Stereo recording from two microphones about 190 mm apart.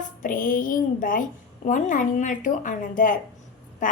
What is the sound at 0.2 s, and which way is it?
A woman's voice, 45° left (ahead or behind).